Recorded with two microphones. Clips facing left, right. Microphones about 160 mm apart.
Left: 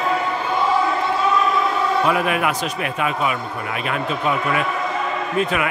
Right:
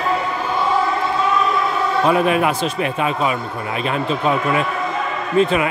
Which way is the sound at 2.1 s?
30° right (ahead or behind).